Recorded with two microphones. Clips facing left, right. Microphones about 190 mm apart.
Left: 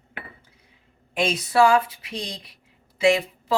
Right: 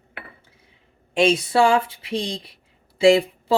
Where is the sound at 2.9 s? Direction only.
30° right (ahead or behind).